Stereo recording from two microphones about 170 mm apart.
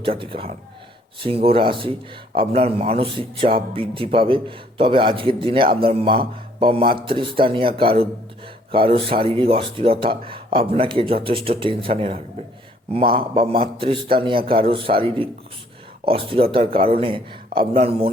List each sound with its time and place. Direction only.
0.0 s speech: 30° right (ahead or behind)
13.1 s speech: 30° right (ahead or behind)